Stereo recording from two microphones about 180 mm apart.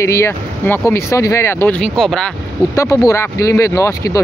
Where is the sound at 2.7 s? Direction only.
20° left (ahead or behind).